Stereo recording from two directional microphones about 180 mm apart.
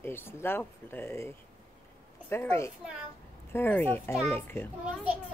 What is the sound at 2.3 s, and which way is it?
A woman's voice, 15° left (ahead or behind).